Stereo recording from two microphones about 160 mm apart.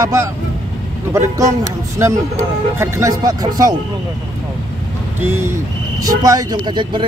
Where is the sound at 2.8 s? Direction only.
20° right (ahead or behind).